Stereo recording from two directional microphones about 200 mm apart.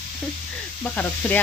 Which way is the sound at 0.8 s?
10° left (ahead or behind).